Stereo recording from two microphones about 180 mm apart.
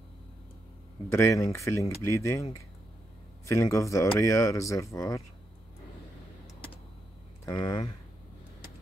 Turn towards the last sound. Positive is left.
turn(degrees=25)  # may be behind; listen again after turning